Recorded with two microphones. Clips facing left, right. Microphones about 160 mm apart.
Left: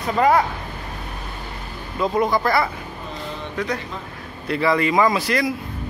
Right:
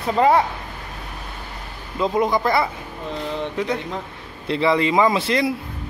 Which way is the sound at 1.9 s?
20° right (ahead or behind).